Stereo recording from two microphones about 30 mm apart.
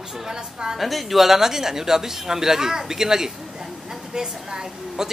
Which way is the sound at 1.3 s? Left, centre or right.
Centre.